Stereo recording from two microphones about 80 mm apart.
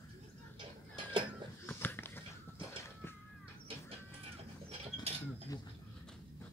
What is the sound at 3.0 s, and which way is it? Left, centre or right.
Crow, left.